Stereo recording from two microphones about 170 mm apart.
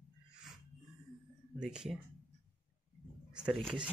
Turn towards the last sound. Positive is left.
turn(degrees=0)  # may be behind; listen again after turning